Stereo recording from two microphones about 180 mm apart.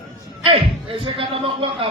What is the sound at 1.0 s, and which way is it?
Speech, 30° right (ahead or behind).